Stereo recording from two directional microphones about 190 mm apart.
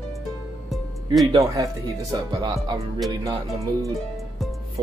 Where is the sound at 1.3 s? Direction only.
25° right (ahead or behind).